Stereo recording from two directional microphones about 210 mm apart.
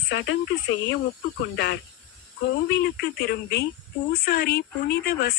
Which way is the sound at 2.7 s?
50° left (ahead or behind).